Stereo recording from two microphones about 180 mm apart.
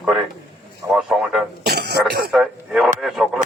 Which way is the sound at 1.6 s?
65° right (ahead or behind).